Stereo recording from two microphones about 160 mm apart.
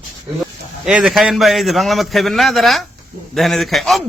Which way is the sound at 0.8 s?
5° right (ahead or behind).